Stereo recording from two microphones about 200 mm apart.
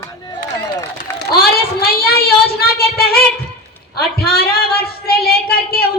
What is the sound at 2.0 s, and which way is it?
Speech, 50° left (ahead or behind).